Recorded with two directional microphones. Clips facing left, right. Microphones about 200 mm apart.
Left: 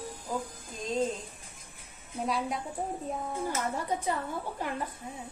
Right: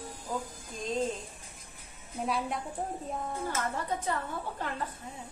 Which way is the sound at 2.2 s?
Centre (ahead or behind).